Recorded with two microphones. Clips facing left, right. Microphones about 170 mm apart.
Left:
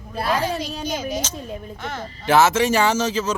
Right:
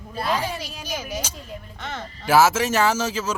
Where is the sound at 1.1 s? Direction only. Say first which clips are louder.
Left 4 dB; 10° right (ahead or behind).